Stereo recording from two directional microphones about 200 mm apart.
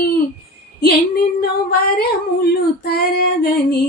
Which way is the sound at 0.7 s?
50° left (ahead or behind).